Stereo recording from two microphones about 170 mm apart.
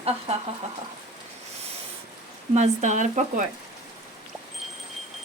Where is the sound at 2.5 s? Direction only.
40° right (ahead or behind).